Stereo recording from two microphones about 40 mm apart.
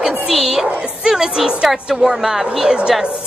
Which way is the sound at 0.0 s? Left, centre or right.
Centre.